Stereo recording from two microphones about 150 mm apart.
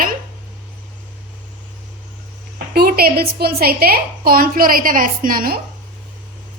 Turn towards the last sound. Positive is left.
turn(degrees=-75)  # may be behind; listen again after turning